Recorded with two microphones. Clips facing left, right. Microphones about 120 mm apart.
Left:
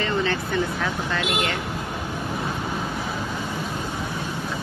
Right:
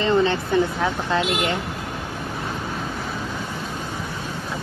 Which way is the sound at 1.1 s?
20° right (ahead or behind).